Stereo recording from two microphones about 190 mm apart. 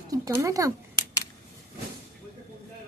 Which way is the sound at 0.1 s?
15° right (ahead or behind).